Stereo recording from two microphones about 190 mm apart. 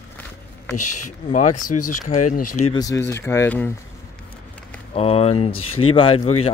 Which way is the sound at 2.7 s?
15° left (ahead or behind).